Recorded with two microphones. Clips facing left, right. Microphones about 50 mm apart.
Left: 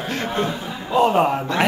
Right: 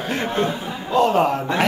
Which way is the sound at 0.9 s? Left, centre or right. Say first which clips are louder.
Even; centre.